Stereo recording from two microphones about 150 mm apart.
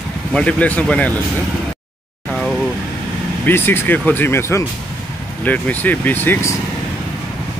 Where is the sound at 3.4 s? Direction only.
15° left (ahead or behind).